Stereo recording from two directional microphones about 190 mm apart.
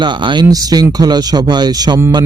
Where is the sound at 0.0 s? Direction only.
25° right (ahead or behind).